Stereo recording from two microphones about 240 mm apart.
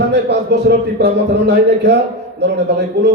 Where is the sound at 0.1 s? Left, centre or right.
Right.